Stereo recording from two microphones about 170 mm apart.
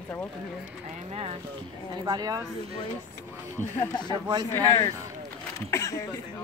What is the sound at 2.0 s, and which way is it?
Speech, 20° right (ahead or behind).